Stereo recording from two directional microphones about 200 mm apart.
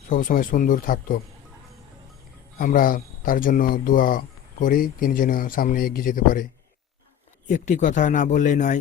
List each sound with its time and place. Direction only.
0.1 s speech: 45° left (ahead or behind)
2.6 s speech: 45° left (ahead or behind)